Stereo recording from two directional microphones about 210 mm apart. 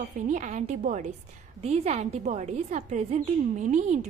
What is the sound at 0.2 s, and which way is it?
A woman's voice, 35° right (ahead or behind).